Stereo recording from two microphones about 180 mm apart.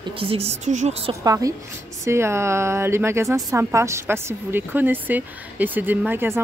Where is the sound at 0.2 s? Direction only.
30° right (ahead or behind).